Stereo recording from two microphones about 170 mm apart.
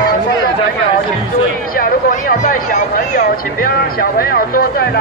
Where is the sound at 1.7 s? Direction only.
55° left (ahead or behind).